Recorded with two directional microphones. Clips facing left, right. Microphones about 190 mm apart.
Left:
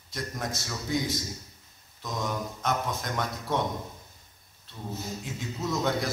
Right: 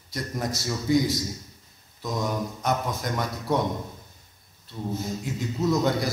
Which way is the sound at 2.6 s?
Centre (ahead or behind).